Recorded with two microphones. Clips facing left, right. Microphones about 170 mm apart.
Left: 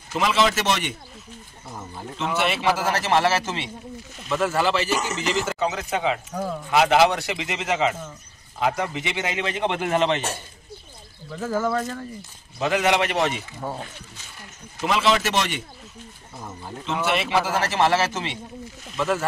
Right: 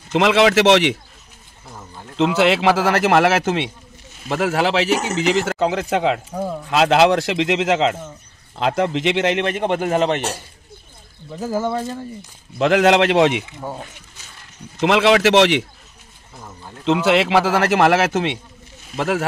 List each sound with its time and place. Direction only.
0.1 s a man's voice: 85° right
2.1 s speech: 90° right; by 3.7 s 60° right (ahead or behind)
4.3 s a man's voice: 70° right (ahead or behind); by 10.2 s 40° right (ahead or behind)
11.4 s speech: 30° right (ahead or behind)
12.5 s a man's voice: 90° right
14.8 s a man's voice: 80° right
16.8 s speech: 90° right; by 19.2 s 70° right (ahead or behind)